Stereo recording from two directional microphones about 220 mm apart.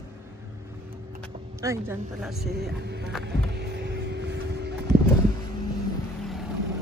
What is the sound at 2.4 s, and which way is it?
Speech, 45° right (ahead or behind).